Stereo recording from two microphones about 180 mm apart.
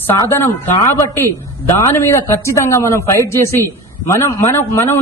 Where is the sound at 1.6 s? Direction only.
15° left (ahead or behind).